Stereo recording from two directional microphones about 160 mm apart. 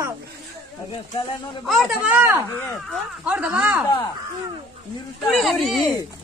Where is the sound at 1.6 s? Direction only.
Centre (ahead or behind).